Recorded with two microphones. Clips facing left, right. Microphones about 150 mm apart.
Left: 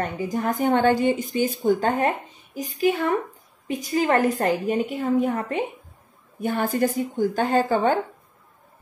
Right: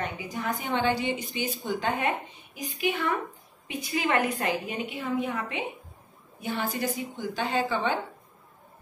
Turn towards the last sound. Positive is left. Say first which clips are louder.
# left 7 dB
turn(degrees=45)  # may be behind; listen again after turning